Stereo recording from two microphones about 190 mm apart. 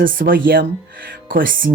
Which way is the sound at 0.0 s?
50° right (ahead or behind).